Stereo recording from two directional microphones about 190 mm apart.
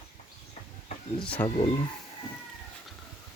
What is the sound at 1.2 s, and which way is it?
Speech, 5° left (ahead or behind).